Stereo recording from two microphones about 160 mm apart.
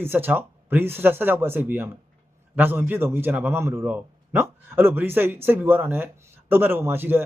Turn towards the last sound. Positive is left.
turn(degrees=-15)  # may be behind; listen again after turning